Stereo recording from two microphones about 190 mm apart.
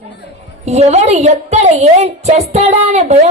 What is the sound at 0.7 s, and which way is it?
A woman's voice, 35° right (ahead or behind).